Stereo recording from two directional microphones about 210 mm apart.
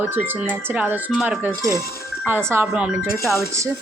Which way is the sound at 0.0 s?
10° right (ahead or behind).